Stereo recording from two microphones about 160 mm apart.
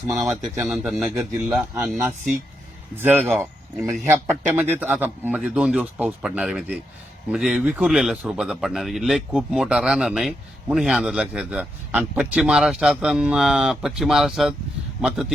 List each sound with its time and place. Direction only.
0.1 s speech: 5° right (ahead or behind)